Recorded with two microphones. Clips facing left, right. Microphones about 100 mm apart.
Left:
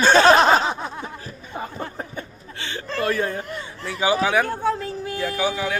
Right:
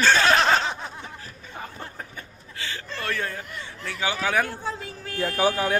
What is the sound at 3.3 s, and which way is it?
Speech, 30° left (ahead or behind).